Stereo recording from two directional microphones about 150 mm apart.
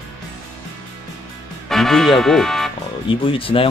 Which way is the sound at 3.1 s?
35° left (ahead or behind).